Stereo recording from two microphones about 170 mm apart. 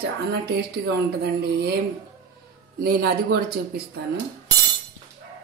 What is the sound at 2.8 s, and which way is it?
Speech, 65° right (ahead or behind).